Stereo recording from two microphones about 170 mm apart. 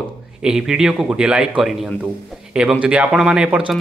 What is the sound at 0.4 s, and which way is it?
Speech, 5° right (ahead or behind).